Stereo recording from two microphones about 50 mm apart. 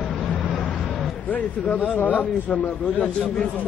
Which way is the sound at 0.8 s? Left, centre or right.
Centre.